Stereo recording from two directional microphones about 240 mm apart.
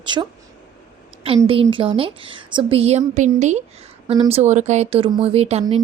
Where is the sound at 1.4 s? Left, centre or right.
Centre.